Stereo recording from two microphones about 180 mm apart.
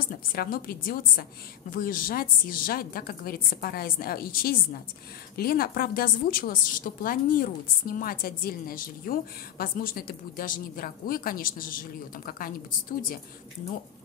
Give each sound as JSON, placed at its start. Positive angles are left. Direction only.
{"t": 0.3, "sound": "a woman's voice", "side_deg": 55}